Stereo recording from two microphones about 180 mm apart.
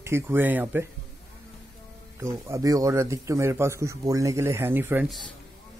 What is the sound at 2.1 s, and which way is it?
A man's voice, 15° right (ahead or behind).